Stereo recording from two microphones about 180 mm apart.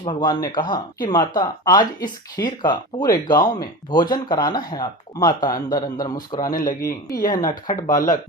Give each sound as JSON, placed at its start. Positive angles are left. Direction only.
{"t": 0.0, "sound": "speech", "side_deg": 25}
{"t": 6.6, "sound": "a man's voice", "side_deg": 50}
{"t": 7.1, "sound": "speech", "side_deg": 20}